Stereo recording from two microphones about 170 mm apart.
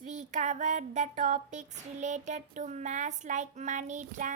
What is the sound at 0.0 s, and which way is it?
Child singing, 45° right (ahead or behind).